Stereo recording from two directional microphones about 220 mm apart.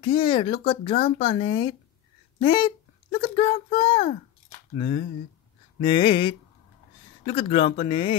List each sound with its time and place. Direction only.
0.0 s speech: 20° left (ahead or behind)